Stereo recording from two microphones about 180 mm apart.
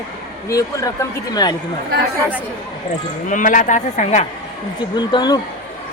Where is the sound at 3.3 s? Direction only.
45° left (ahead or behind).